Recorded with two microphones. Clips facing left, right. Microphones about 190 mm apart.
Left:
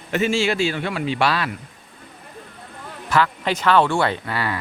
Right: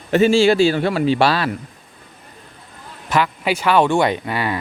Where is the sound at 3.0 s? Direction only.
15° right (ahead or behind).